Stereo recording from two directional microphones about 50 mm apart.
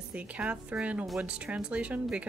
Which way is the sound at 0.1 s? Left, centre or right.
Right.